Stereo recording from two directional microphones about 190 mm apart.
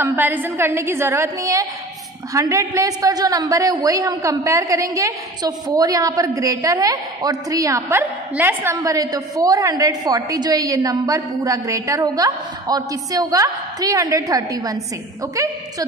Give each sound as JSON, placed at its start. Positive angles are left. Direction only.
{"t": 0.0, "sound": "a woman's voice", "side_deg": -10}